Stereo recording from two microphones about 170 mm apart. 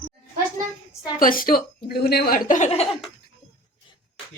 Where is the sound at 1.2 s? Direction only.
55° left (ahead or behind).